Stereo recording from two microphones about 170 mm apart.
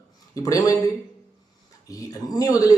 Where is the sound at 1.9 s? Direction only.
20° left (ahead or behind).